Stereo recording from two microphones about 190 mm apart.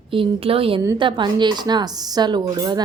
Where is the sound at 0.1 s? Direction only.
30° right (ahead or behind).